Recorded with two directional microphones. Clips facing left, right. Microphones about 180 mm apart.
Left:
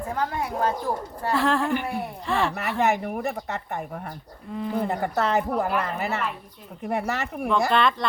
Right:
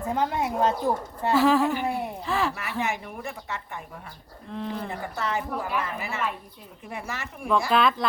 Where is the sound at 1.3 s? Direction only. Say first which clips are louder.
Right 2 dB; centre (ahead or behind).